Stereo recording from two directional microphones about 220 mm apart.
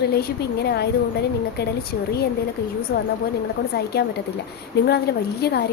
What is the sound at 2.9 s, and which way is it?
A woman's voice, 45° left (ahead or behind).